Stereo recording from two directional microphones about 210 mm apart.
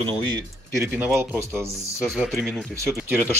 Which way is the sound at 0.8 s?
10° right (ahead or behind).